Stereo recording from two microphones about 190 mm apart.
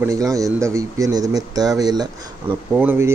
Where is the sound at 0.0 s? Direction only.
15° right (ahead or behind).